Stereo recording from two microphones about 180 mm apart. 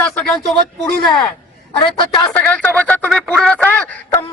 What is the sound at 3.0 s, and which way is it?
A man's voice, centre (ahead or behind).